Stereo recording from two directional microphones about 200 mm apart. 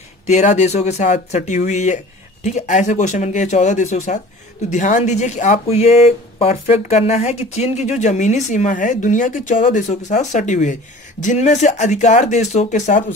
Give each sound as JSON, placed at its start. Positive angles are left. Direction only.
{"t": 0.3, "sound": "speech", "side_deg": 35}